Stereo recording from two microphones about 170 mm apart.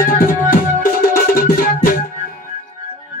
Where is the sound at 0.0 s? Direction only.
55° left (ahead or behind).